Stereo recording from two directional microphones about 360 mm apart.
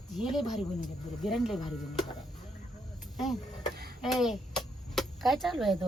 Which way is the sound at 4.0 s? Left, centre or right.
Centre.